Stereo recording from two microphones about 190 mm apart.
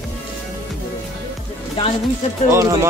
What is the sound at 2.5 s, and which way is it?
Speech, 15° right (ahead or behind).